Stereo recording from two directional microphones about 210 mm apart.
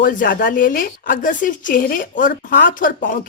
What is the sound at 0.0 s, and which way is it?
A woman's voice, 45° left (ahead or behind).